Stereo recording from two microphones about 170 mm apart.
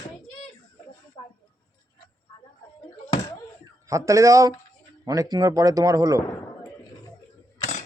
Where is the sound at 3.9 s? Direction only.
20° right (ahead or behind).